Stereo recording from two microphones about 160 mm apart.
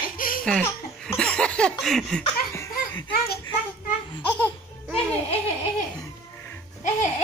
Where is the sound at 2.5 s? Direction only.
20° left (ahead or behind).